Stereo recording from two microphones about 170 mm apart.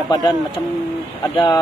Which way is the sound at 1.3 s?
25° left (ahead or behind).